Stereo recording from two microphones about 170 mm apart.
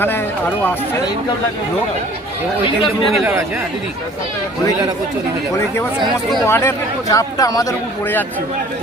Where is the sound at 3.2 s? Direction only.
15° right (ahead or behind).